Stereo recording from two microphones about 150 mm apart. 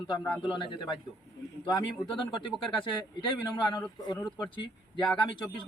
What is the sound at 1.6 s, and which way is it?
Speech, 30° left (ahead or behind).